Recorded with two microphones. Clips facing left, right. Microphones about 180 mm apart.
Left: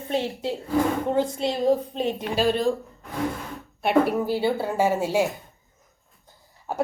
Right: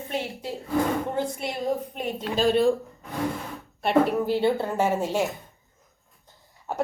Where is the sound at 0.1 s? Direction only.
30° left (ahead or behind).